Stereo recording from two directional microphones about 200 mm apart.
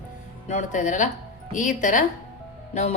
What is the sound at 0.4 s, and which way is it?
A woman's voice, 35° left (ahead or behind).